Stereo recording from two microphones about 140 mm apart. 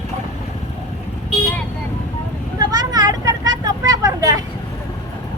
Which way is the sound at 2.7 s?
30° right (ahead or behind).